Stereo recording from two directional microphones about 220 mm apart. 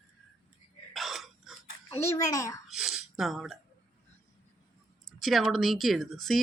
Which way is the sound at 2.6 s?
Centre (ahead or behind).